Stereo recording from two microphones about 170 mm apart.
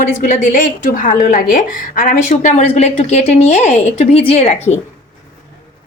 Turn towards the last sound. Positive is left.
turn(degrees=40)  # may be behind; listen again after turning